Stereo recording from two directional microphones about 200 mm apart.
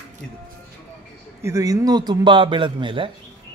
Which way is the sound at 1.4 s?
15° right (ahead or behind).